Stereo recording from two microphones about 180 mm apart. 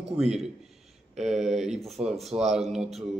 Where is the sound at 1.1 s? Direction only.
Centre (ahead or behind).